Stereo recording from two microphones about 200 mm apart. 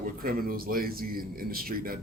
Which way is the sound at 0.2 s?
45° right (ahead or behind).